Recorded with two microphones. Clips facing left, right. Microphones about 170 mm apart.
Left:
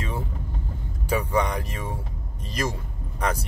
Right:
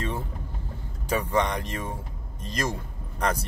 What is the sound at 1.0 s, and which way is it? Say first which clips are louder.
Speech: left 1 dB; 10° left (ahead or behind).